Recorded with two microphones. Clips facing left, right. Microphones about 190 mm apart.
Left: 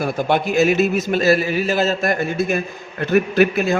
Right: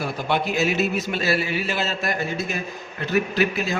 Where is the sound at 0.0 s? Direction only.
50° left (ahead or behind).